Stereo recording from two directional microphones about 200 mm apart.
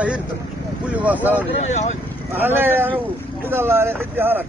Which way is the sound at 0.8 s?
5° right (ahead or behind).